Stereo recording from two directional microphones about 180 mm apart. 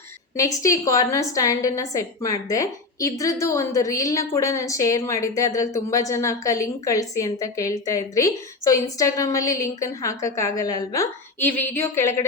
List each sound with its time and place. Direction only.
0.3 s a woman's voice: 20° left (ahead or behind)